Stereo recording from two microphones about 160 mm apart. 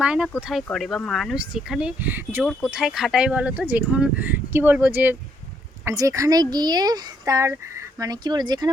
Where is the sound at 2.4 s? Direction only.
Centre (ahead or behind).